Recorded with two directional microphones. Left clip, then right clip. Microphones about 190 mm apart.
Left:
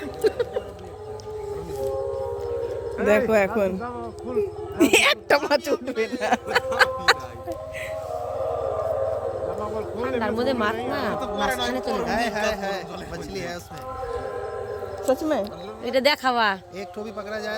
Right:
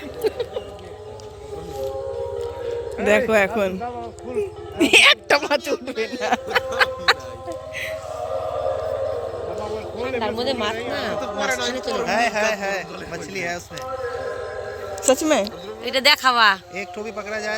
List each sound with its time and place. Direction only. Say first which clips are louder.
0.2 s a sound: left 1 dB; 55° left (ahead or behind)
3.1 s a man's voice: right 2 dB; 5° left (ahead or behind)
3.8 s speech: right 2 dB; 55° left (ahead or behind)
4.4 s a woman's voice: even; 10° left (ahead or behind)
5.7 s music: even; 20° left (ahead or behind)
10.0 s speech: right 1 dB; 60° left (ahead or behind)
11.2 s speech: right 2 dB; 35° left (ahead or behind)
11.7 s speech: right 1 dB; 55° left (ahead or behind)
12.0 s speech: right 7 dB; 40° right (ahead or behind)
15.0 s a woman's voice: right 5 dB; 20° right (ahead or behind)
15.8 s speech: right 4 dB; 30° left (ahead or behind)
16.7 s speech: right 4 dB; 40° right (ahead or behind)